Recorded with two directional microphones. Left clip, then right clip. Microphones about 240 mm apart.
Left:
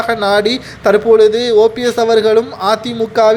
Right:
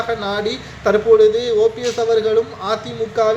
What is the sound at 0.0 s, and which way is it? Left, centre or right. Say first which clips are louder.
Speech: left 8 dB; left.